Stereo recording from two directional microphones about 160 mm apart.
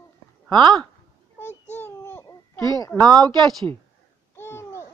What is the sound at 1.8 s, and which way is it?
Babbling, 15° left (ahead or behind).